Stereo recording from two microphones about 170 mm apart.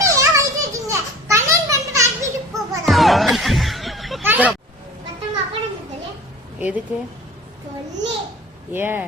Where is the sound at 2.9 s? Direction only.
Centre (ahead or behind).